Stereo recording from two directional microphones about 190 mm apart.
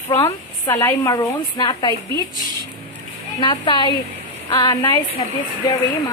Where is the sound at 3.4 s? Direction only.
25° left (ahead or behind).